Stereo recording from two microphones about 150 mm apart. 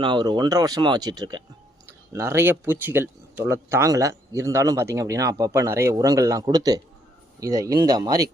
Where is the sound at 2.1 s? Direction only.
15° right (ahead or behind).